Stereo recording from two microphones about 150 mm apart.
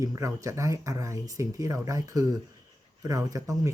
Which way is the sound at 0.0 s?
20° right (ahead or behind).